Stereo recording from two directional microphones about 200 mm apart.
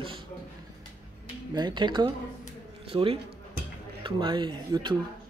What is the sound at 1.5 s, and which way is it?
A man's voice, 20° right (ahead or behind).